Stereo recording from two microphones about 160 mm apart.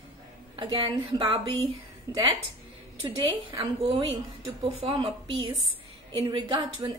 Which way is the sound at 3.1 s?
30° right (ahead or behind).